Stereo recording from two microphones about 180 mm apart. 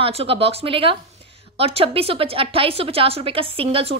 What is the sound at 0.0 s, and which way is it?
A woman's voice, 30° right (ahead or behind).